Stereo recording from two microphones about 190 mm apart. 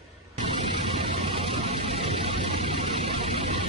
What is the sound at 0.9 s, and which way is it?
Music, 30° right (ahead or behind).